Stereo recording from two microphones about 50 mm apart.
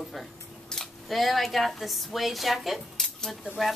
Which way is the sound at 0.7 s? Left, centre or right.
Centre.